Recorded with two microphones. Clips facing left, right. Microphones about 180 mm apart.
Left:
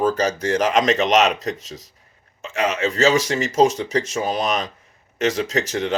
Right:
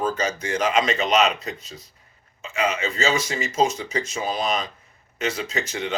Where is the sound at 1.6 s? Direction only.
90° left.